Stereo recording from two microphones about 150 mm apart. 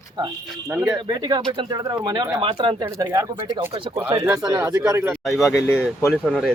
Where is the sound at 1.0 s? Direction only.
25° right (ahead or behind).